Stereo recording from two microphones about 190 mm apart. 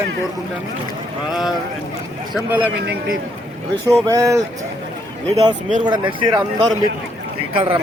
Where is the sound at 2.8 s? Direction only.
60° right (ahead or behind).